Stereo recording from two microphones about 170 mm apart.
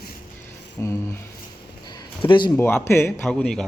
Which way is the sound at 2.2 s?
30° left (ahead or behind).